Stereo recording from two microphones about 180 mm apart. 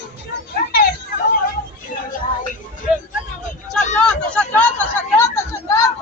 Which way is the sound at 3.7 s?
5° left (ahead or behind).